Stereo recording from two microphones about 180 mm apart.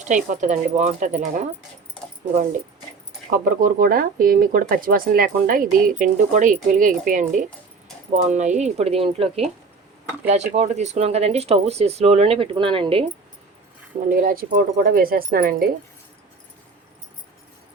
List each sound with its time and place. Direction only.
0.3 s speech: 40° right (ahead or behind)
14.1 s speech: 50° right (ahead or behind)